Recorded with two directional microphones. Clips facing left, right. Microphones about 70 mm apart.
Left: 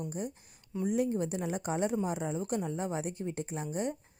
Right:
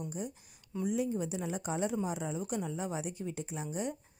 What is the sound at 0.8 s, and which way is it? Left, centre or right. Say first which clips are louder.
A woman's voice: left 3 dB; left.